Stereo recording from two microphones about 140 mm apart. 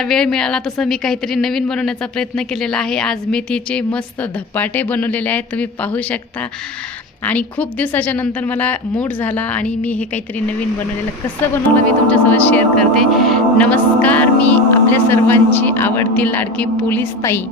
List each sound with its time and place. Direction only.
0.0 s a woman's voice: 5° left (ahead or behind)
7.3 s speech: 10° left (ahead or behind)
11.5 s speech: 10° left (ahead or behind)